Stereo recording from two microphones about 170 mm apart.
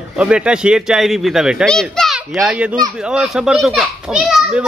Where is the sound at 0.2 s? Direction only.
5° right (ahead or behind).